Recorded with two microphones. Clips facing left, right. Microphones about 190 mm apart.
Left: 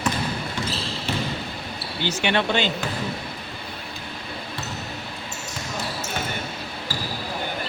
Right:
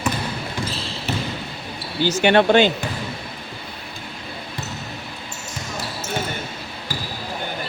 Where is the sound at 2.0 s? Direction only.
40° right (ahead or behind).